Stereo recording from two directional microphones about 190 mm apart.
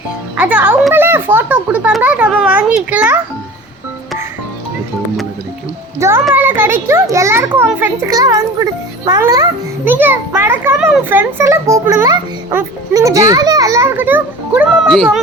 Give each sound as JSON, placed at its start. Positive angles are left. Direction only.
{"t": 0.3, "sound": "a child's voice", "side_deg": -5}
{"t": 6.0, "sound": "a child's voice", "side_deg": -15}